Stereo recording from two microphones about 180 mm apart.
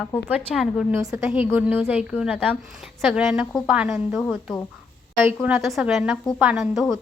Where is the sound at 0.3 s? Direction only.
5° right (ahead or behind).